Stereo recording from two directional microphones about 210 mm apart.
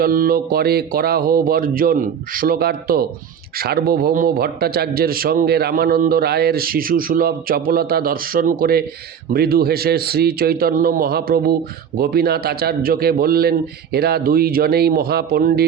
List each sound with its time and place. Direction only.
0.0 s a man's voice: 45° right (ahead or behind)